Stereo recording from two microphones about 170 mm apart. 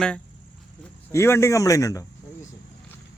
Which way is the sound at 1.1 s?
15° left (ahead or behind).